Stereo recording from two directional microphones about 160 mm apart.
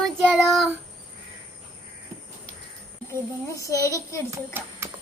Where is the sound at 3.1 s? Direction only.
20° left (ahead or behind).